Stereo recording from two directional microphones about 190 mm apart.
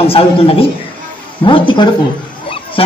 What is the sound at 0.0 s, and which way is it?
A woman's voice, 30° left (ahead or behind).